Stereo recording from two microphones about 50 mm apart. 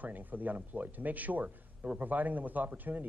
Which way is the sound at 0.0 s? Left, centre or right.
Right.